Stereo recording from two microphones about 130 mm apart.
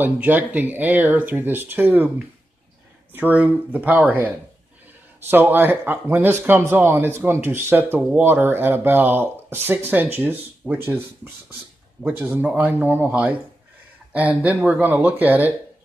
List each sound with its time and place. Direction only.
0.0 s speech: 15° right (ahead or behind)
5.3 s speech: 15° right (ahead or behind)
12.0 s speech: 15° right (ahead or behind)